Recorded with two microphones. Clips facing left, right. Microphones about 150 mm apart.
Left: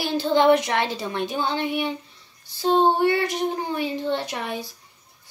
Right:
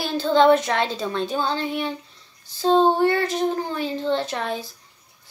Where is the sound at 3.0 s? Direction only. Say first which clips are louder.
Right 1 dB; 45° right (ahead or behind).